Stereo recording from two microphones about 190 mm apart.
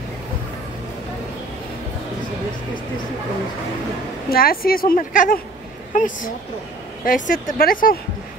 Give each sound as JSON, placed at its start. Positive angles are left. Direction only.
{"t": 4.3, "sound": "a woman's voice", "side_deg": 50}